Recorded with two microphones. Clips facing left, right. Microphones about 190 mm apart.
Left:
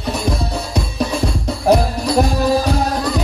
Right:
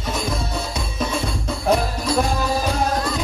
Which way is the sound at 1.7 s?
35° left (ahead or behind).